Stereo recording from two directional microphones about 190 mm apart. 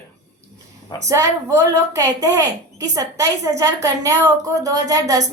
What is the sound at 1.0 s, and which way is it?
Speech, 15° right (ahead or behind).